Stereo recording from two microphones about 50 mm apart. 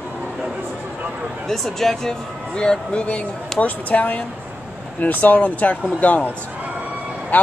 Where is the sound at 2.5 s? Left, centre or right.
Centre.